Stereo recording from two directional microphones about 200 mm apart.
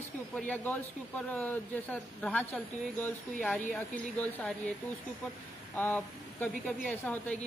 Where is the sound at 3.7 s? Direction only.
5° left (ahead or behind).